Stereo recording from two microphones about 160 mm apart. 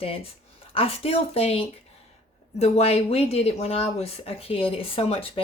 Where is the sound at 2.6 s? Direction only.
40° left (ahead or behind).